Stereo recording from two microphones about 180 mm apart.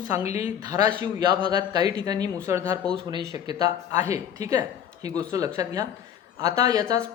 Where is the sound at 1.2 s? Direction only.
25° right (ahead or behind).